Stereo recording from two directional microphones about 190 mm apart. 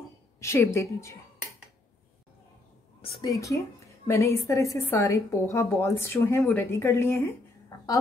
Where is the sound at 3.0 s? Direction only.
30° left (ahead or behind).